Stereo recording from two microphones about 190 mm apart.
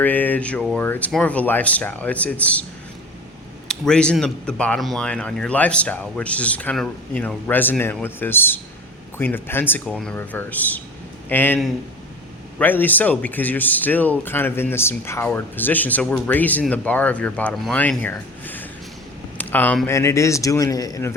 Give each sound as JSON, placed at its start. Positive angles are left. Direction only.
{"t": 0.0, "sound": "speech", "side_deg": 10}
{"t": 3.7, "sound": "speech", "side_deg": 5}